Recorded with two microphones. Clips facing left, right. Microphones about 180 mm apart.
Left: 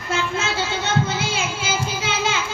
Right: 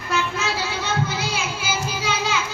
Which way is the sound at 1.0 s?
25° left (ahead or behind).